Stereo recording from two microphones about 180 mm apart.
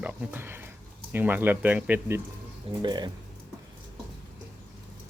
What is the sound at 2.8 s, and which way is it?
Speech, 25° right (ahead or behind).